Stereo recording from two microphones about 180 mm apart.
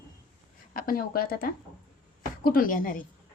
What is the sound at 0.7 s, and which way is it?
A woman's voice, 55° left (ahead or behind).